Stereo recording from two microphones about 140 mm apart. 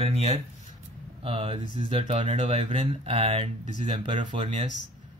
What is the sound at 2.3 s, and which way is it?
Speech, 55° right (ahead or behind).